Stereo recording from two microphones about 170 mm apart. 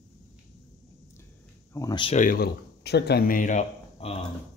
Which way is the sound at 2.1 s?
55° left (ahead or behind).